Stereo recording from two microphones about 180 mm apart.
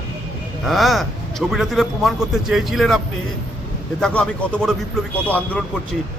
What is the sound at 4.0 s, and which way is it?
A man's voice, 5° left (ahead or behind).